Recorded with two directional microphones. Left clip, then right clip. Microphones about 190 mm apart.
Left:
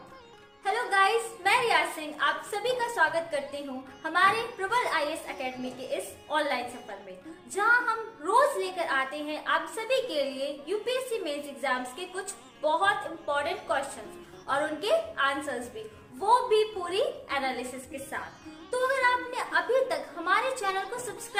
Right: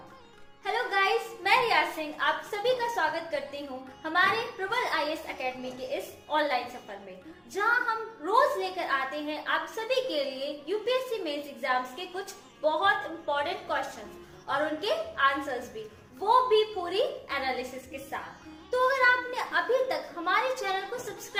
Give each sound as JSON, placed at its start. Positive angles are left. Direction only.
{"t": 0.6, "sound": "a sound", "side_deg": 15}
{"t": 4.0, "sound": "a woman's voice", "side_deg": 15}
{"t": 19.0, "sound": "a woman's voice", "side_deg": 15}